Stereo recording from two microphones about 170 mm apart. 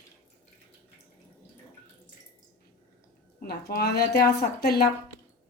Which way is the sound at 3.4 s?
65° left (ahead or behind).